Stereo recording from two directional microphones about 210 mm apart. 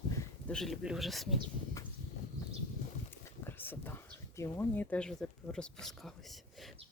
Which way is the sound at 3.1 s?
10° left (ahead or behind).